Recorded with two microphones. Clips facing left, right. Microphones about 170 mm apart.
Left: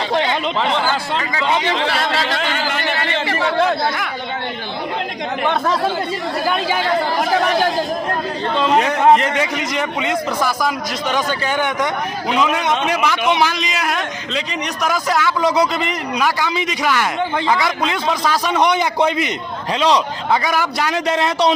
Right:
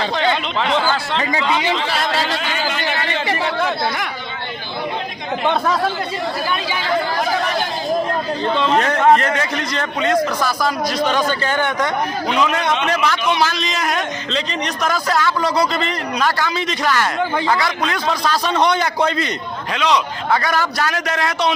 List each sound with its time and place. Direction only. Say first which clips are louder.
8.5 s a man's voice: left 2 dB; 10° left (ahead or behind)
19.7 s speech: left 2 dB; 30° left (ahead or behind)
20.3 s a man's voice: left 1 dB; 15° left (ahead or behind)